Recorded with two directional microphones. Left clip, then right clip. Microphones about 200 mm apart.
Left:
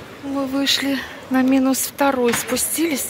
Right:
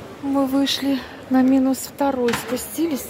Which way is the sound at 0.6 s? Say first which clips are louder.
Left 2 dB; 15° right (ahead or behind).